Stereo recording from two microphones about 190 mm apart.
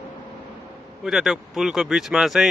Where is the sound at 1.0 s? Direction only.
Centre (ahead or behind).